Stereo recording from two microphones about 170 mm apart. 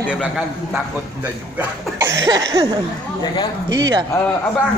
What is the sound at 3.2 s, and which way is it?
Speech, 25° left (ahead or behind).